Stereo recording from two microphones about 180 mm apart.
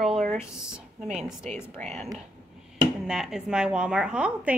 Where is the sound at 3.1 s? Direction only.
5° right (ahead or behind).